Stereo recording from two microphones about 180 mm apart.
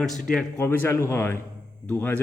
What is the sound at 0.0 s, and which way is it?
A man's voice, centre (ahead or behind).